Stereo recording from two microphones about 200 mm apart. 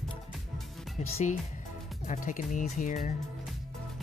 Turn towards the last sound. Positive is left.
turn(degrees=40)  # may be behind; listen again after turning